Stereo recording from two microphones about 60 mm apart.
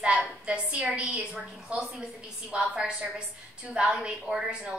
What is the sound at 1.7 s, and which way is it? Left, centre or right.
A woman's voice, centre.